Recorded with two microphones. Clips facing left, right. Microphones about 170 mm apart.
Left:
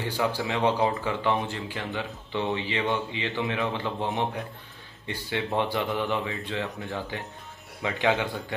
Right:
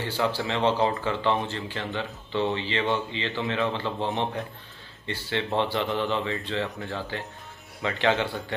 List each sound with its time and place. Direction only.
0.0 s a man's voice: 15° left (ahead or behind)
6.2 s speech: centre (ahead or behind)
6.9 s a man's voice: 20° left (ahead or behind)